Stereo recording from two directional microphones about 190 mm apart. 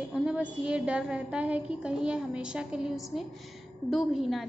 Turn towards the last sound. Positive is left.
turn(degrees=0)  # may be behind; listen again after turning